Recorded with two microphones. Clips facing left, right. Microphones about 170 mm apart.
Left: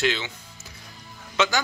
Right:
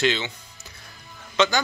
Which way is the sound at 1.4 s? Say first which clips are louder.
Right 3 dB; 5° left (ahead or behind).